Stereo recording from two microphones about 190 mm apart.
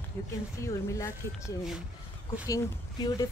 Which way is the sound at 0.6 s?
15° left (ahead or behind).